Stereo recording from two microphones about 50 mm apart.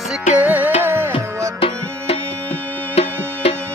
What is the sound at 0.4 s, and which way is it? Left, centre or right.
Music, right.